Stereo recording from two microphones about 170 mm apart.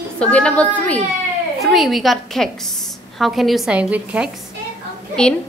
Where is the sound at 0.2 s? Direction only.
5° left (ahead or behind).